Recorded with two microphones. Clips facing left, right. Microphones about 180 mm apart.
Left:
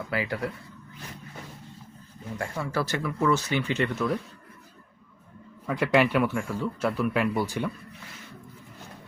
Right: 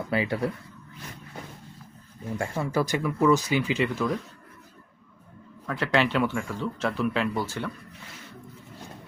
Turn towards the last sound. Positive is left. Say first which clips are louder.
# left 2 dB
turn(degrees=15)  # may be behind; listen again after turning